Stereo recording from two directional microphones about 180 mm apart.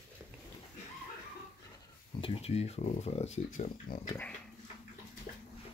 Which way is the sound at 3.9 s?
55° left (ahead or behind).